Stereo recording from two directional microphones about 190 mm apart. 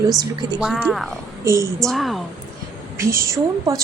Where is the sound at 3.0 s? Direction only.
15° right (ahead or behind).